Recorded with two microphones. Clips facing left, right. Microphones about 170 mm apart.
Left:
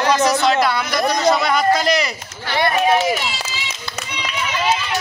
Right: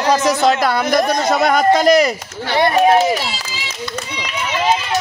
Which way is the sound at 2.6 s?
30° right (ahead or behind).